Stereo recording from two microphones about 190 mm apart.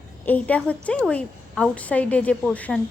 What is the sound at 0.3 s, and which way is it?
A woman's voice, 10° left (ahead or behind).